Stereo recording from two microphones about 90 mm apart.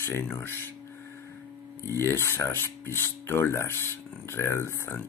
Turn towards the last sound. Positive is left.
turn(degrees=30)  # may be behind; listen again after turning